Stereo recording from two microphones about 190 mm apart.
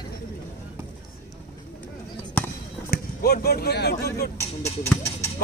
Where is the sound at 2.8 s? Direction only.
55° left (ahead or behind).